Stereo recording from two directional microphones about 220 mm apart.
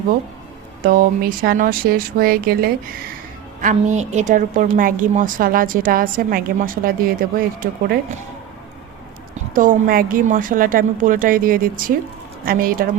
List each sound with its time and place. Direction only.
0.8 s a woman's voice: 40° right (ahead or behind)
9.6 s a woman's voice: 40° right (ahead or behind)